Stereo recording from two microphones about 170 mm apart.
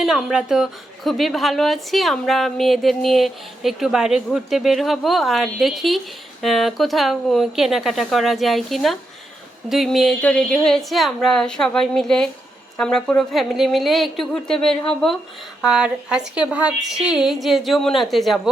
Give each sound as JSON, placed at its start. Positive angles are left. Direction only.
{"t": 0.0, "sound": "a woman's voice", "side_deg": -5}